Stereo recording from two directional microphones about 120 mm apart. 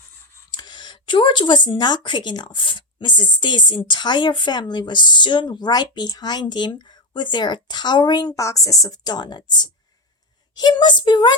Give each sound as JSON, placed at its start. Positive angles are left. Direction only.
{"t": 0.5, "sound": "speech", "side_deg": 40}